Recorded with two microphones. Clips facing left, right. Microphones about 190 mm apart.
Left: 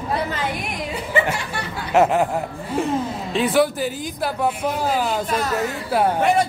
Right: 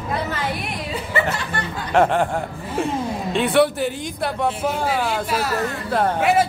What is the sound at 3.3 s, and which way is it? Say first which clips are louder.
A man's voice: right 1 dB; centre (ahead or behind).